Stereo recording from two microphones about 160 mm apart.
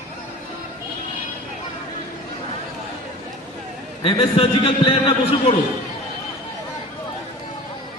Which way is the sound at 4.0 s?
35° left (ahead or behind).